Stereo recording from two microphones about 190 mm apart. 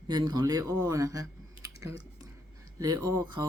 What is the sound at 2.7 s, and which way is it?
Speech, 20° right (ahead or behind).